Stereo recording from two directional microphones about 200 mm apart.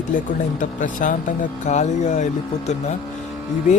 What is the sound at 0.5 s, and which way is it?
Speech, 40° left (ahead or behind).